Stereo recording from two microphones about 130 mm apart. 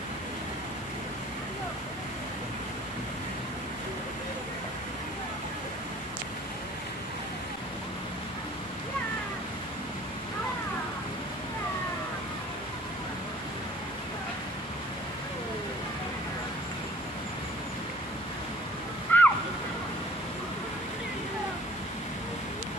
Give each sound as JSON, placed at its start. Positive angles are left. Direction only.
{"t": 19.1, "sound": "slosh", "side_deg": 15}